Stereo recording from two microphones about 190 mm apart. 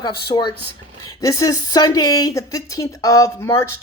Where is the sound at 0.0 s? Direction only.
20° left (ahead or behind).